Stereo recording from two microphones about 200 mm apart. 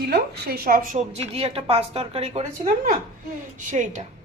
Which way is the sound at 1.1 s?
30° right (ahead or behind).